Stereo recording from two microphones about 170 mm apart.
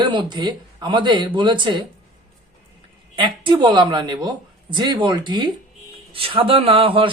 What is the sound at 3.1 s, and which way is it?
A man's voice, 30° right (ahead or behind).